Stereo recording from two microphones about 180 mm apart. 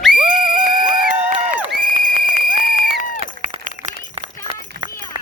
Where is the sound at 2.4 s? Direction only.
50° left (ahead or behind).